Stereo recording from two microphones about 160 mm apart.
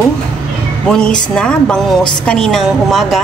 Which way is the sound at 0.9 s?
5° left (ahead or behind).